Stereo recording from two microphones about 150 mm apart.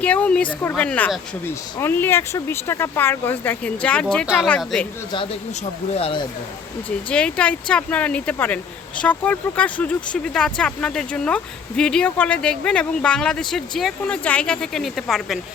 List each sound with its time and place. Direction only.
0.0 s speech: 10° left (ahead or behind)
5.9 s speech: 40° left (ahead or behind)
7.1 s speech: 5° left (ahead or behind)